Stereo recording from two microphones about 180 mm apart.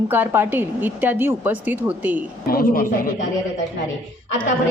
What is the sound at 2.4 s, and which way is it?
Speech, 55° left (ahead or behind).